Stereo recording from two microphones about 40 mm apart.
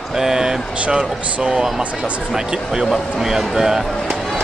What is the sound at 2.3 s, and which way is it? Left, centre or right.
Speech, centre.